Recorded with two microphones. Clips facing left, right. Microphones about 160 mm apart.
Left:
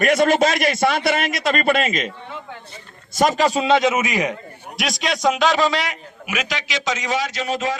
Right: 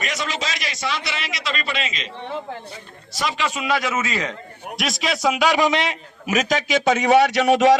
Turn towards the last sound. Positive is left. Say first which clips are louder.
# right 9 dB
turn(degrees=-75)  # may be behind; listen again after turning